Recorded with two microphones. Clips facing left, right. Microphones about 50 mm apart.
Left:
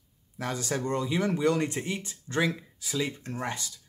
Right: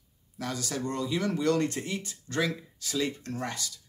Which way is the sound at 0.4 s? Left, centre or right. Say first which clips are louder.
Left 2 dB; left.